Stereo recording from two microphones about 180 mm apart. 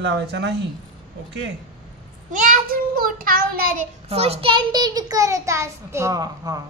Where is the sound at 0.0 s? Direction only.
75° right (ahead or behind).